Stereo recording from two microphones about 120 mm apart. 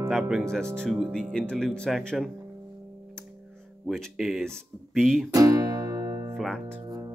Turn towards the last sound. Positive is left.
turn(degrees=5)  # may be behind; listen again after turning